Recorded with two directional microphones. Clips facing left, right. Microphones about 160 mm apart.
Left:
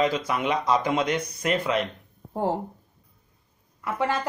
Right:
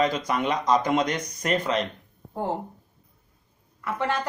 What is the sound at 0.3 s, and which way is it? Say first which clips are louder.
Speech: right 1 dB; 5° left (ahead or behind).